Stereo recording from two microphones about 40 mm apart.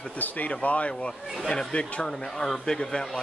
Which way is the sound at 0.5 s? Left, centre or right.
Left.